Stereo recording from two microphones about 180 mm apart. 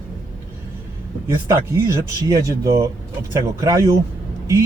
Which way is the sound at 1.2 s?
15° right (ahead or behind).